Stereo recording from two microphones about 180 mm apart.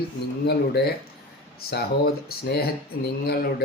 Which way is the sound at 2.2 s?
60° left (ahead or behind).